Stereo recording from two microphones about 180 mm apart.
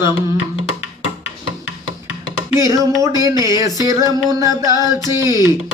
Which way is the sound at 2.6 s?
20° right (ahead or behind).